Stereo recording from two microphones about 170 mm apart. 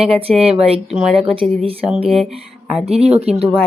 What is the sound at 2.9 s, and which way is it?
Speech, 35° right (ahead or behind).